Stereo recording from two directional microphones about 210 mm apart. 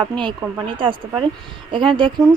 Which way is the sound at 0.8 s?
25° right (ahead or behind).